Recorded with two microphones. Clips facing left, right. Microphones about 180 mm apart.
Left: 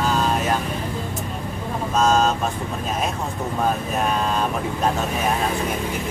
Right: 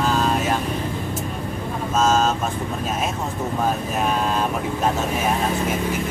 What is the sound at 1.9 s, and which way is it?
Speech, centre (ahead or behind).